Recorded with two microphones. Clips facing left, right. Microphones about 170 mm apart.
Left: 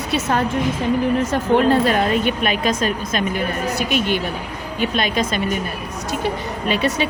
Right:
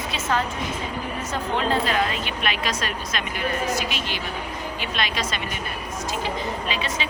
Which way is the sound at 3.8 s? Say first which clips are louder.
Left 9 dB; 50° left (ahead or behind).